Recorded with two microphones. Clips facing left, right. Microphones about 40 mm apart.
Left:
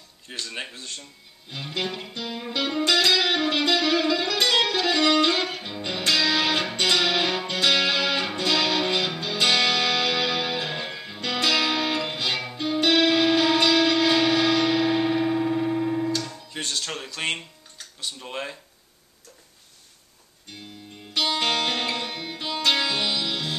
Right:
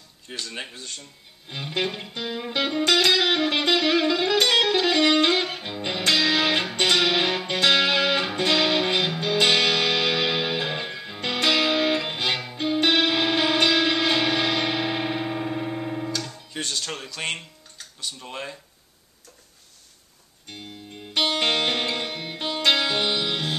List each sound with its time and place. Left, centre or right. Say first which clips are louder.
0.3 s speech: even; centre
1.5 s music: right 2 dB; centre
4.4 s music: right 2 dB; centre
16.5 s a sound: even; centre
21.1 s music: right 1 dB; right